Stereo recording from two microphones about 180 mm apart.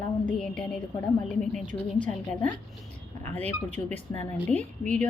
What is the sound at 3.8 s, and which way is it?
Speech, 20° left (ahead or behind).